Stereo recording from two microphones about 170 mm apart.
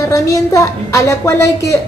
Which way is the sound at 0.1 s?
20° left (ahead or behind).